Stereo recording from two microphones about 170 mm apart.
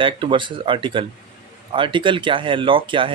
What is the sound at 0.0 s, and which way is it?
Speech, 30° right (ahead or behind).